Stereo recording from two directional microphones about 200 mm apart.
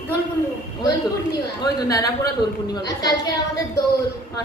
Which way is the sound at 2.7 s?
20° left (ahead or behind).